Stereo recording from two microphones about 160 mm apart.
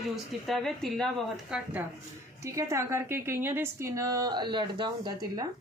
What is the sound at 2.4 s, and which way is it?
A woman's voice, 20° right (ahead or behind).